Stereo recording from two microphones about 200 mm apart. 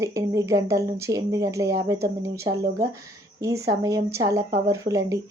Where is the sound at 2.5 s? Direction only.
55° right (ahead or behind).